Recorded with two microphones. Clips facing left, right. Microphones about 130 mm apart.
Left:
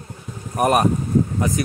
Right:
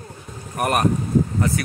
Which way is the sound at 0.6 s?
10° left (ahead or behind).